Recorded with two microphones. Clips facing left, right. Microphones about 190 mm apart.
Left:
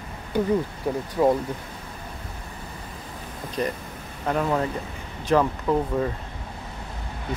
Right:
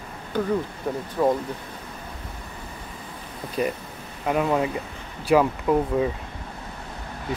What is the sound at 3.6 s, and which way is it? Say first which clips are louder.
Speech: right 2 dB; 10° right (ahead or behind).